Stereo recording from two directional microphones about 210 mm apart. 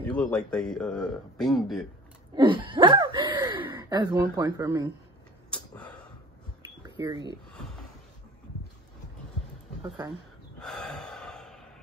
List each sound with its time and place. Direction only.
0.1 s a man's voice: 5° left (ahead or behind)
2.3 s wheeze: 25° right (ahead or behind)
3.6 s speech: 20° right (ahead or behind)
5.5 s a sound: 5° left (ahead or behind)
7.0 s speech: 20° right (ahead or behind)
10.6 s gasp: 5° left (ahead or behind)